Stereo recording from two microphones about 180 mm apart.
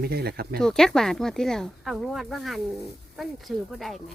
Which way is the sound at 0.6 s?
5° left (ahead or behind).